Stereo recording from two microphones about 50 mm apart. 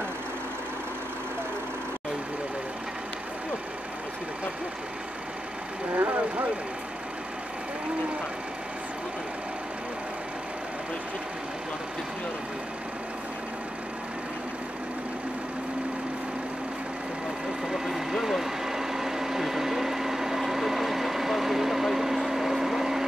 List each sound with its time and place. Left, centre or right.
5.9 s vehicle: right
17.6 s blender: centre